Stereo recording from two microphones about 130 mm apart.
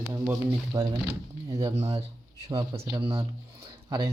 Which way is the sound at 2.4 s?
25° right (ahead or behind).